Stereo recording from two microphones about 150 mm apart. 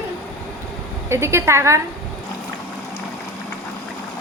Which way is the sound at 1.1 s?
20° right (ahead or behind).